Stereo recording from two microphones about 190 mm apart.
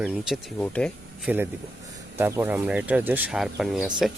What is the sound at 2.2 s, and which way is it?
Speech, 10° right (ahead or behind).